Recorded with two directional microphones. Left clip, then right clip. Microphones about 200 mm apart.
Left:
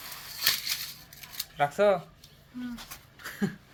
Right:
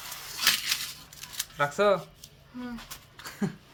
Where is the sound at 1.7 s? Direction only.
10° right (ahead or behind).